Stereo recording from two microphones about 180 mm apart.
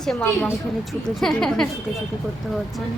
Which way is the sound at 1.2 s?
Centre (ahead or behind).